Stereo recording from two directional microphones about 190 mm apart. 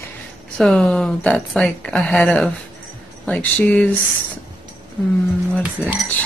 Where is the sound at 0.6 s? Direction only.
5° left (ahead or behind).